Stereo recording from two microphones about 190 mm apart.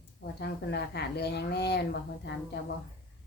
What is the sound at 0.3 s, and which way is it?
A woman's voice, 60° left (ahead or behind).